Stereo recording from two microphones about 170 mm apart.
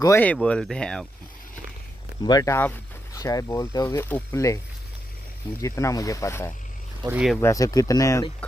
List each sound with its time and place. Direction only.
0.0 s speech: 10° left (ahead or behind)
2.2 s speech: 20° left (ahead or behind)
5.6 s speech: 20° left (ahead or behind)
7.1 s speech: 5° right (ahead or behind)
7.3 s speech: 20° left (ahead or behind)